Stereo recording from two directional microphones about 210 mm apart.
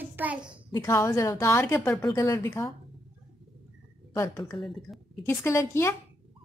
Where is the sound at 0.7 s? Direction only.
15° left (ahead or behind).